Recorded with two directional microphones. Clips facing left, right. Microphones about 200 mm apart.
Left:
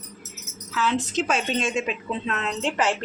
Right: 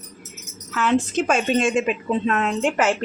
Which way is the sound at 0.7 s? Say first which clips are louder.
Right 4 dB; 50° right (ahead or behind).